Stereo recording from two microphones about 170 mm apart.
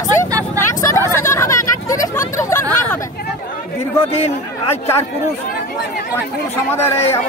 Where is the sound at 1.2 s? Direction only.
15° left (ahead or behind).